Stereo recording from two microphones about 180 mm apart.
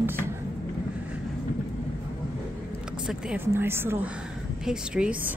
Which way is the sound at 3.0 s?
10° right (ahead or behind).